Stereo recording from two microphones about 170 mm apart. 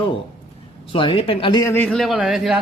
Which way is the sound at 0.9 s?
30° left (ahead or behind).